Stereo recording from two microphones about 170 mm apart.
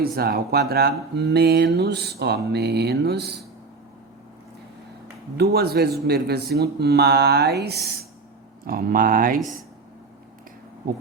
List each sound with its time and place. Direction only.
0.0 s speech: 65° right (ahead or behind)
5.4 s speech: 70° right (ahead or behind)
8.6 s speech: 60° right (ahead or behind)